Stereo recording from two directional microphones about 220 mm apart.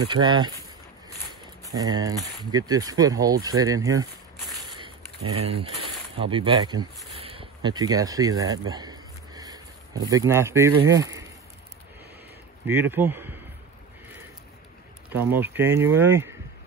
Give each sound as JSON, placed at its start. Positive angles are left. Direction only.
{"t": 0.1, "sound": "speech", "side_deg": -20}
{"t": 1.7, "sound": "speech", "side_deg": -15}
{"t": 4.6, "sound": "a sound", "side_deg": -20}
{"t": 5.4, "sound": "speech", "side_deg": -30}
{"t": 7.2, "sound": "a sound", "side_deg": -25}
{"t": 10.9, "sound": "speech", "side_deg": -15}
{"t": 12.9, "sound": "speech", "side_deg": -10}
{"t": 15.0, "sound": "speech", "side_deg": -10}